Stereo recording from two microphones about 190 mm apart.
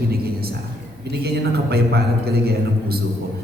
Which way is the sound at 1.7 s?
55° right (ahead or behind).